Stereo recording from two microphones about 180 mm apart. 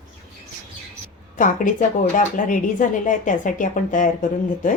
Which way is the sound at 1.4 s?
45° left (ahead or behind).